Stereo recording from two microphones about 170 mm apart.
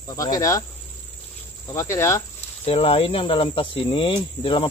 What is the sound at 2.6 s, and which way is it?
Speech, 35° left (ahead or behind).